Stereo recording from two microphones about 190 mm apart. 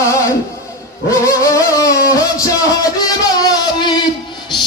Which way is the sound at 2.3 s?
15° left (ahead or behind).